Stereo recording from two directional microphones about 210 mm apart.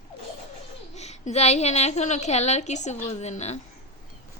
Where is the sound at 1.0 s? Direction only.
30° left (ahead or behind).